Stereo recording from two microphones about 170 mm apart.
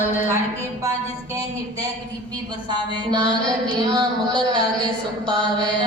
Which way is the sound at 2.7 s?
25° right (ahead or behind).